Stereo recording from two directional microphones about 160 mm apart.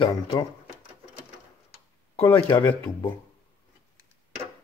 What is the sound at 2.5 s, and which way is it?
Speech, 25° left (ahead or behind).